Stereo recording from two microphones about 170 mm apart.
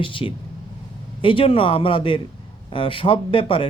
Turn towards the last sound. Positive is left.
turn(degrees=30)  # may be behind; listen again after turning